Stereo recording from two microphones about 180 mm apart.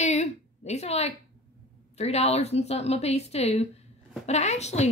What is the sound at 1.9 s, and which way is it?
A woman's voice, 35° left (ahead or behind).